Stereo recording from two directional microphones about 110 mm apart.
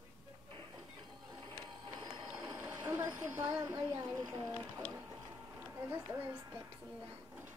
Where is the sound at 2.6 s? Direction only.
10° right (ahead or behind).